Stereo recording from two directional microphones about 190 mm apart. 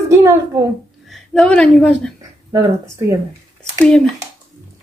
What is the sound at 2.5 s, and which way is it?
Speech, 15° right (ahead or behind).